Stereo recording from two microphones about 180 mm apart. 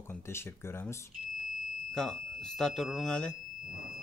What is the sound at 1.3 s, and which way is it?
Speech, centre (ahead or behind).